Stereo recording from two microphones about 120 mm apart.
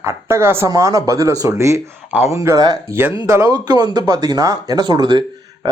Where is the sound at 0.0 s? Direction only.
20° right (ahead or behind).